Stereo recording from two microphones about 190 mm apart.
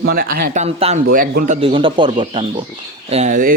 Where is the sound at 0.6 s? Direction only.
35° right (ahead or behind).